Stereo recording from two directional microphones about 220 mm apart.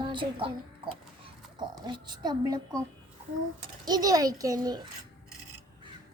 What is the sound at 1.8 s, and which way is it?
A child's voice, 20° right (ahead or behind).